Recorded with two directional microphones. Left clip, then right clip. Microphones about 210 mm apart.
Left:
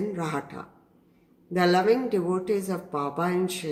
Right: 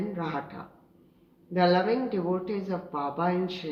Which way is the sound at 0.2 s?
60° left (ahead or behind).